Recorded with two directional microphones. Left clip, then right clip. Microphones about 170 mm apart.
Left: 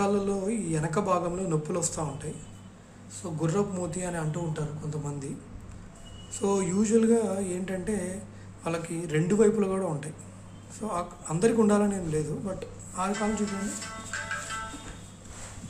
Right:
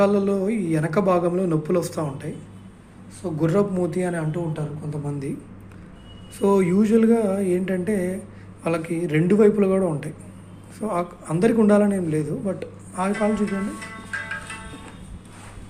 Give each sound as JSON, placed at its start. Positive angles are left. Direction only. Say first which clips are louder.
{"t": 0.0, "sound": "a man's voice", "louder": "right 8 dB", "side_deg": -15}
{"t": 3.4, "sound": "a man's voice", "louder": "right 8 dB", "side_deg": -20}
{"t": 6.4, "sound": "a man's voice", "louder": "right 8 dB", "side_deg": -15}